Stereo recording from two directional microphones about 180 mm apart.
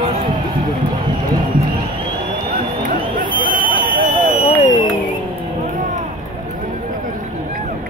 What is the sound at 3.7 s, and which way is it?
Fire alarm, 45° right (ahead or behind).